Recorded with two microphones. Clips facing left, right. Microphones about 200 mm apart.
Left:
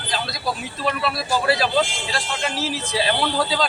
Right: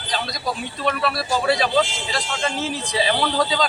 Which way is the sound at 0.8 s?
Centre (ahead or behind).